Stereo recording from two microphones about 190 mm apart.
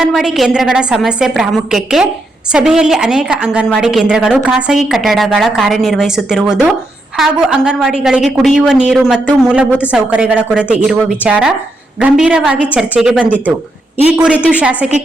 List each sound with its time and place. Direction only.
0.0 s a woman's voice: centre (ahead or behind)